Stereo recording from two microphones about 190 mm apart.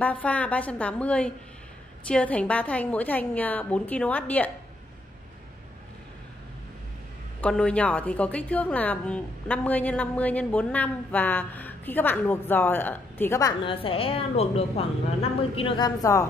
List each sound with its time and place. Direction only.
0.0 s a woman's voice: 10° left (ahead or behind)
7.4 s a woman's voice: 5° left (ahead or behind)
13.7 s a woman's voice: 30° left (ahead or behind)